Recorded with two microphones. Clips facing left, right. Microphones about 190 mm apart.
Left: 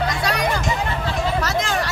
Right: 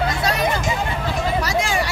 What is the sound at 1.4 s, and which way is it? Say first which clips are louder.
Hubbub: right 1 dB; 10° right (ahead or behind).